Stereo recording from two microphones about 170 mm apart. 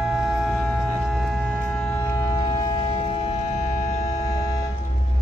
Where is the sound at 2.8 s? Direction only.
35° left (ahead or behind).